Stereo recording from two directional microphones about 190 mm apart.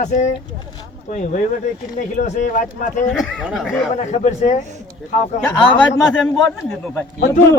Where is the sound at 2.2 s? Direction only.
40° left (ahead or behind).